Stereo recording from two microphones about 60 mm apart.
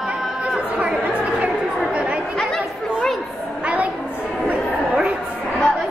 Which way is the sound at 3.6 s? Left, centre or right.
Right.